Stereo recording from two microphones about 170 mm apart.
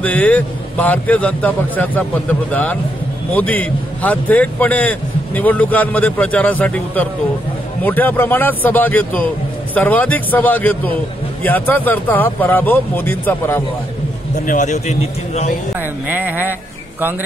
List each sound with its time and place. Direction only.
0.0 s a man's voice: 10° left (ahead or behind)
14.4 s a man's voice: 50° left (ahead or behind)
16.1 s speech: 10° right (ahead or behind)